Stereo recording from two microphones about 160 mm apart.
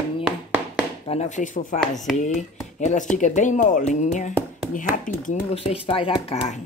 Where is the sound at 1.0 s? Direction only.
45° left (ahead or behind).